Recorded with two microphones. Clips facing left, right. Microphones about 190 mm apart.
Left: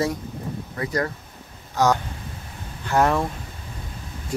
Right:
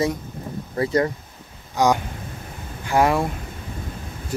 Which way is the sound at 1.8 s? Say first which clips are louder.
Right 1 dB; 15° right (ahead or behind).